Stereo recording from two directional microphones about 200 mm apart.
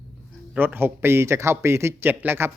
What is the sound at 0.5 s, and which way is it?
A man's voice, 10° right (ahead or behind).